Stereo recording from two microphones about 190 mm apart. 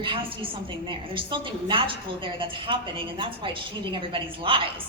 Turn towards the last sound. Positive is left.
turn(degrees=-30)  # may be behind; listen again after turning